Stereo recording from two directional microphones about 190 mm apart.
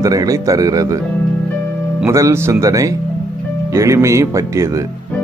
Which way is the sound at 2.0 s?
15° right (ahead or behind).